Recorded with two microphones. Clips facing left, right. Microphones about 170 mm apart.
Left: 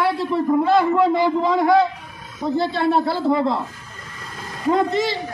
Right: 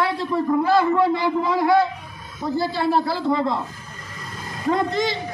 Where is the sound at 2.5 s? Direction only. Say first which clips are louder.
Left 2 dB; 5° right (ahead or behind).